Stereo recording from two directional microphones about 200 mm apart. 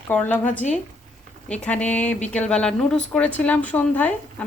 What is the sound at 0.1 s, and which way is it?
A woman's voice, 10° left (ahead or behind).